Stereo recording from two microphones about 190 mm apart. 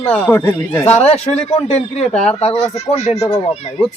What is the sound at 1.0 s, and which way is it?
Speech, 35° left (ahead or behind).